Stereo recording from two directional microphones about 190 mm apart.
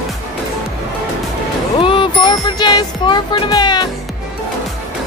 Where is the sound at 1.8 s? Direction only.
25° left (ahead or behind).